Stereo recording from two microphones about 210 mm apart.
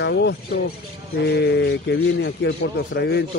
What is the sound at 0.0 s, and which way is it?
A man's voice, 50° left (ahead or behind).